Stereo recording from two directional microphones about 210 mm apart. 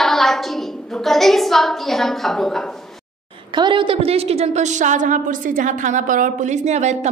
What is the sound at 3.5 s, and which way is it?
A woman's voice, 20° right (ahead or behind).